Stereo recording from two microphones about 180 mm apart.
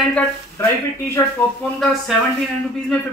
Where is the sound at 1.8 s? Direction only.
Centre (ahead or behind).